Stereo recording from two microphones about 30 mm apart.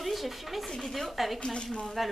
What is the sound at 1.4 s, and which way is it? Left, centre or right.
Speech, left.